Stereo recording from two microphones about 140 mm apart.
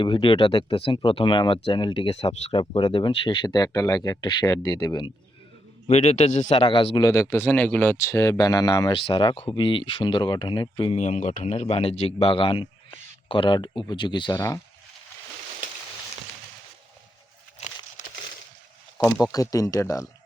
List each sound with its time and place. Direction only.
0.0 s speech: 40° left (ahead or behind)
5.9 s speech: 50° left (ahead or behind)
6.6 s speech: 40° left (ahead or behind)
7.0 s speech: 20° left (ahead or behind); by 11.0 s 40° left (ahead or behind)
11.0 s speech: 60° left (ahead or behind); by 14.3 s 35° left (ahead or behind)
14.3 s speech: 20° left (ahead or behind)
18.0 s a sound: 60° left (ahead or behind)
19.2 s speech: 25° left (ahead or behind)